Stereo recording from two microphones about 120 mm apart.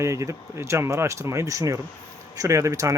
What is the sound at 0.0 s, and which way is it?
Speech, 25° right (ahead or behind).